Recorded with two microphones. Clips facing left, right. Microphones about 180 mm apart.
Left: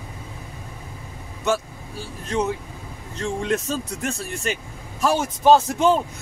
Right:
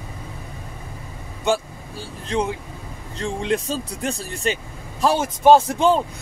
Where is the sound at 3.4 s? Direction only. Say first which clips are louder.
Right 2 dB; 30° right (ahead or behind).